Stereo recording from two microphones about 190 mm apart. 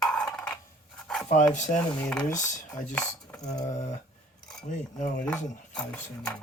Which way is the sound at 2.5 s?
40° left (ahead or behind).